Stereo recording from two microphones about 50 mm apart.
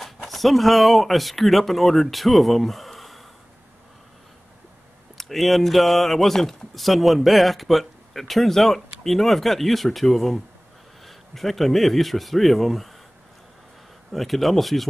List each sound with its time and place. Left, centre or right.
0.0 s speech: centre
5.1 s speech: centre
14.1 s speech: centre